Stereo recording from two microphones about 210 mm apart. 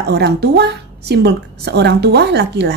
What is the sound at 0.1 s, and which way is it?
A woman's voice, 50° right (ahead or behind).